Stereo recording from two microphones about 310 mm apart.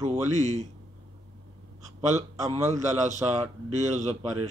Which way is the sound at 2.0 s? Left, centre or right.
Right.